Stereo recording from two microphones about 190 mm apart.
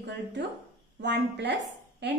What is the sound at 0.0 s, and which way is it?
A woman's voice, 65° right (ahead or behind).